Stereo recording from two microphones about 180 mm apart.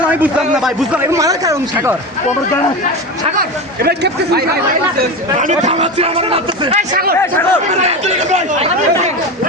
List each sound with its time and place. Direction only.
0.1 s a man's voice: 5° right (ahead or behind)
1.1 s speech: 20° right (ahead or behind)
3.8 s speech: 60° right (ahead or behind)
5.4 s a man's voice: 40° right (ahead or behind)
6.9 s speech: 55° right (ahead or behind)
7.2 s speech: 10° left (ahead or behind)
7.7 s a man's voice: 40° right (ahead or behind)